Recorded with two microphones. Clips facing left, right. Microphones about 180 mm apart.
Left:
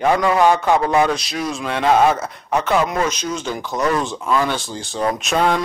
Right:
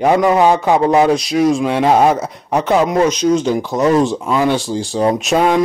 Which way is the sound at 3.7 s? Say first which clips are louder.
Right 6 dB; 20° right (ahead or behind).